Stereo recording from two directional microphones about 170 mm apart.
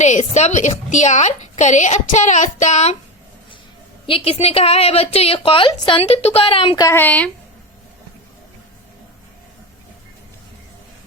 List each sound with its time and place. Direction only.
0.0 s a woman's voice: 45° left (ahead or behind)
4.0 s a woman's voice: 35° left (ahead or behind); by 7.3 s 10° left (ahead or behind)